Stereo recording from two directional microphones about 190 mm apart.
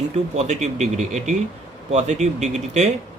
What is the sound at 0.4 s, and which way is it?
A man's voice, 35° right (ahead or behind).